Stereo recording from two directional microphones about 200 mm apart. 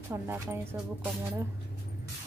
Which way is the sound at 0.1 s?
10° right (ahead or behind).